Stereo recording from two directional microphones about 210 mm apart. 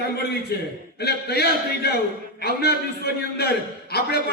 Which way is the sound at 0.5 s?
50° left (ahead or behind).